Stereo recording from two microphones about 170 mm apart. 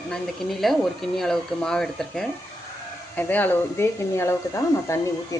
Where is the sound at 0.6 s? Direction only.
Centre (ahead or behind).